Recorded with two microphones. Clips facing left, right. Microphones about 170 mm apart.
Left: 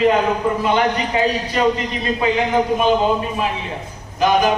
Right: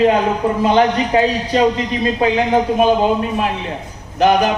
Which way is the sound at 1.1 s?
55° right (ahead or behind).